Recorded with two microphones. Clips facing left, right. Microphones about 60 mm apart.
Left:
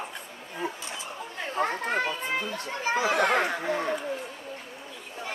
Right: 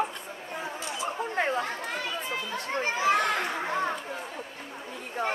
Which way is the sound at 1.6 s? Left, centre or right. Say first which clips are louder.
Left 6 dB; left.